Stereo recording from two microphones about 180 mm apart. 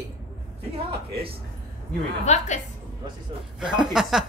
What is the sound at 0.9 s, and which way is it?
Speech, 30° right (ahead or behind).